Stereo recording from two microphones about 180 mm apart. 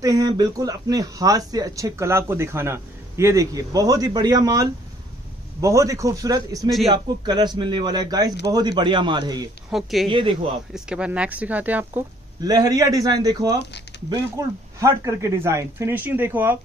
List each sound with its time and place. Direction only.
0.0 s speech: 20° right (ahead or behind)
9.7 s speech: centre (ahead or behind)
10.0 s speech: 25° right (ahead or behind)
10.7 s speech: 5° right (ahead or behind)
12.4 s speech: 20° right (ahead or behind)
13.9 s a sound: 70° left (ahead or behind)
14.3 s speech: 15° right (ahead or behind)